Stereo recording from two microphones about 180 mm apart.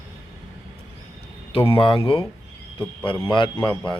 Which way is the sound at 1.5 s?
30° left (ahead or behind).